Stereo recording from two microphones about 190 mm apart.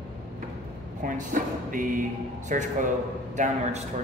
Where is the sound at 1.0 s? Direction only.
45° right (ahead or behind).